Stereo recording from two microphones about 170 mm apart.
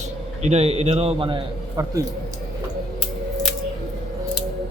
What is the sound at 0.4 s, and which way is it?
Speech, 40° right (ahead or behind).